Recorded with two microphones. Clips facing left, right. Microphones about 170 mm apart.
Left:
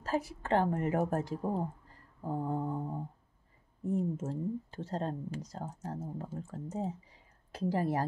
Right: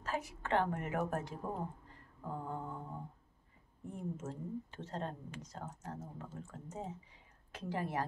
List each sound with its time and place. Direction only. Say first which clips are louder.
0.0 s a woman's voice: left 6 dB; 35° left (ahead or behind)